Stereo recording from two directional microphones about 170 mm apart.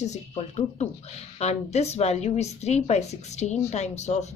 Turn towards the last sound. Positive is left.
turn(degrees=40)  # may be behind; listen again after turning